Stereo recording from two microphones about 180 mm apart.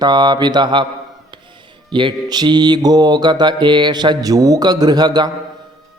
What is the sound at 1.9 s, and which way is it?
Mantra, 25° right (ahead or behind).